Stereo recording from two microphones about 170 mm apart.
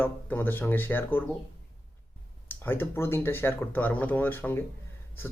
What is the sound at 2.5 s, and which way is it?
Speech, 10° left (ahead or behind).